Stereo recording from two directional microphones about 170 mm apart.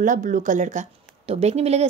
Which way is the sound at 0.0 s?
50° right (ahead or behind).